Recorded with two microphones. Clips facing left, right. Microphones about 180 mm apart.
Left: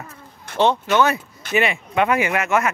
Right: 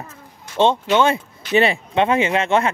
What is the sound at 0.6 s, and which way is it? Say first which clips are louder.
Speech: right 1 dB; 25° right (ahead or behind).